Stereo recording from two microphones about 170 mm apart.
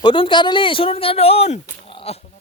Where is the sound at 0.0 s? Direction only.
30° left (ahead or behind).